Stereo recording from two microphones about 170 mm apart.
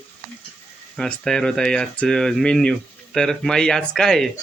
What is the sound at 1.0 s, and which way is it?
Speech, 5° left (ahead or behind).